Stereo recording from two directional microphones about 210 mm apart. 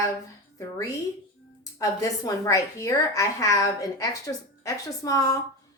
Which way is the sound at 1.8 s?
15° left (ahead or behind).